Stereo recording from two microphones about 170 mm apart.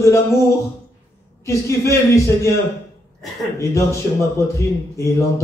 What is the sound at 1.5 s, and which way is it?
A man's voice, 15° left (ahead or behind).